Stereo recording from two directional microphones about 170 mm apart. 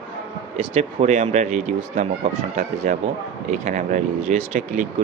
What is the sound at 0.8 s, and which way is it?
Speech, 45° right (ahead or behind).